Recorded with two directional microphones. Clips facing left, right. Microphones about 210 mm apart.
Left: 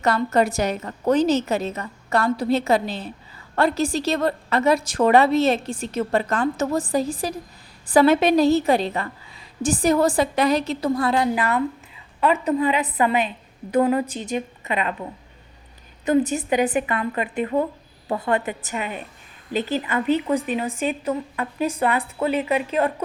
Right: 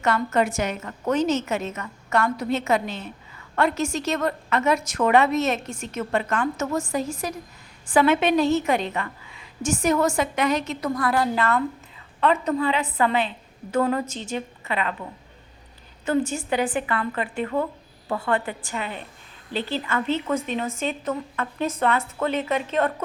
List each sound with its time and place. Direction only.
0.0 s a woman's voice: 35° left (ahead or behind); by 14.9 s 20° left (ahead or behind)
16.0 s a woman's voice: 20° left (ahead or behind)